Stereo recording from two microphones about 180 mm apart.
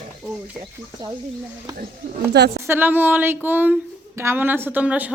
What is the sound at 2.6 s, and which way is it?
Speech, 10° right (ahead or behind).